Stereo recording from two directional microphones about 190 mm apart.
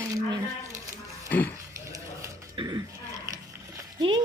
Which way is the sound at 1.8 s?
15° right (ahead or behind).